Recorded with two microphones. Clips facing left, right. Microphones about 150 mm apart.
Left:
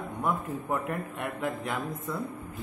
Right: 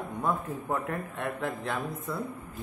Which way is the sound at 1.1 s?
15° left (ahead or behind).